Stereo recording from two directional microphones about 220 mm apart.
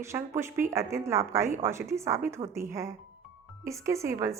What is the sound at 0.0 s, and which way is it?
A woman's voice, 10° right (ahead or behind).